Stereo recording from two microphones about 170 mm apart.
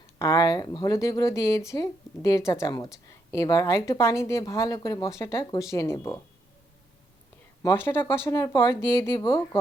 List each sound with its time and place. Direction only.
0.2 s speech: 20° left (ahead or behind)
7.6 s speech: 15° left (ahead or behind)